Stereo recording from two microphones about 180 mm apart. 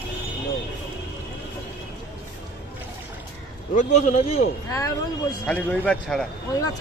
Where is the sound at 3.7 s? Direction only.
40° left (ahead or behind).